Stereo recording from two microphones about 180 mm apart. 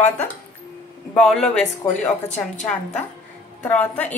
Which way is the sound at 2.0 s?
40° left (ahead or behind).